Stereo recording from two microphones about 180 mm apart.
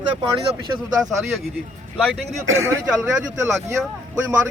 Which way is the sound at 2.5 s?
90° right.